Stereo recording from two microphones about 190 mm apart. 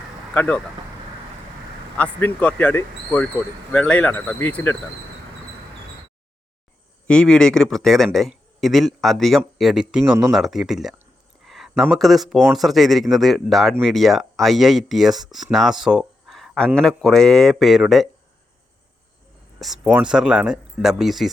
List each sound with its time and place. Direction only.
0.3 s speech: 10° left (ahead or behind)
2.0 s speech: 5° left (ahead or behind)
7.1 s speech: 5° left (ahead or behind)
11.4 s a sound: centre (ahead or behind)
11.7 s speech: centre (ahead or behind)
19.5 s speech: centre (ahead or behind)